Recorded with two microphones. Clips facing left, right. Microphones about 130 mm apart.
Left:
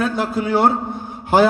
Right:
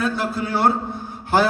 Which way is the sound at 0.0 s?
50° left (ahead or behind).